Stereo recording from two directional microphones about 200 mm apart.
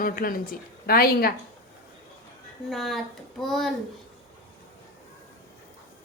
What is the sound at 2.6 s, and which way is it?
A child's voice, centre (ahead or behind).